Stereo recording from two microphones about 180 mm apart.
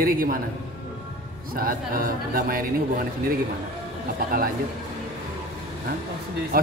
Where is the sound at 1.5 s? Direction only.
50° right (ahead or behind).